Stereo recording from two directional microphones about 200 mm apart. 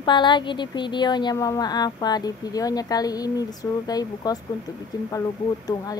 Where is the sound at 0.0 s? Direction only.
25° left (ahead or behind).